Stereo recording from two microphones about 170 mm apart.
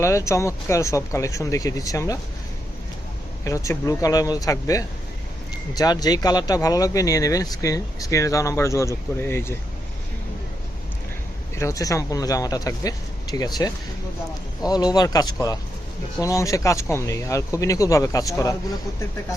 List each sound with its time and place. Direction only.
0.0 s speech: 15° left (ahead or behind)
3.4 s speech: 20° left (ahead or behind)
11.5 s speech: 20° left (ahead or behind)
14.7 s speech: 25° left (ahead or behind)